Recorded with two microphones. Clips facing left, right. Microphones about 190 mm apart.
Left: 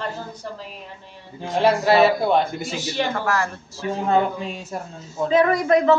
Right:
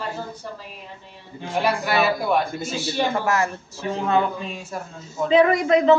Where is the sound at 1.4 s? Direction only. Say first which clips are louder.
Left 4 dB; 30° left (ahead or behind).